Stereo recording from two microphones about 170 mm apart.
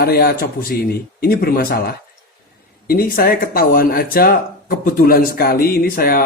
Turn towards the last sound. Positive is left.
turn(degrees=60)  # may be behind; listen again after turning